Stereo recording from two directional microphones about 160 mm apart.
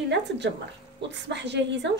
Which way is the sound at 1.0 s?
90° right.